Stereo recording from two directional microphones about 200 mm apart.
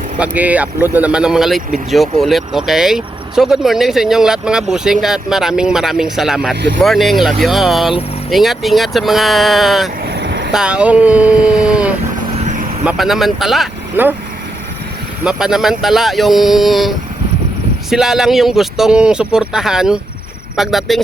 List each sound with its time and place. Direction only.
0.2 s speech: 5° right (ahead or behind)
10.1 s vehicle: 60° right (ahead or behind)
10.5 s speech: 5° right (ahead or behind)
15.2 s speech: 5° right (ahead or behind)